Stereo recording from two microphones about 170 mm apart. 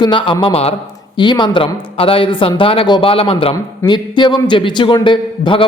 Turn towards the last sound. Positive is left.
turn(degrees=30)  # may be behind; listen again after turning